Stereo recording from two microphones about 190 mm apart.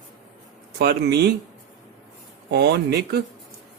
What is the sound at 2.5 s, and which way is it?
Speech, 60° right (ahead or behind).